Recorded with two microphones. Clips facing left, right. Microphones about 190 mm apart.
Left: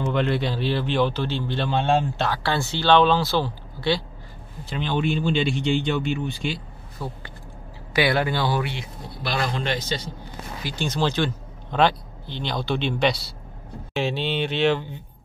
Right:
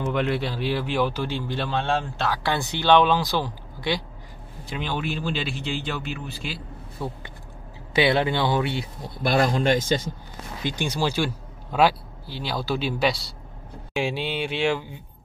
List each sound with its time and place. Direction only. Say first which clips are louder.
0.0 s speech: left 1 dB; 5° right (ahead or behind)
2.3 s speech: left 1 dB; 15° right (ahead or behind)
7.9 s speech: right 1 dB; 25° right (ahead or behind)
9.2 s a man's voice: right 6 dB; 50° right (ahead or behind)
10.6 s speech: left 1 dB; 20° right (ahead or behind)